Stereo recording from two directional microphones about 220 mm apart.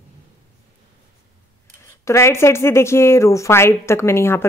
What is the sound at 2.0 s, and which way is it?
A woman's voice, 10° left (ahead or behind).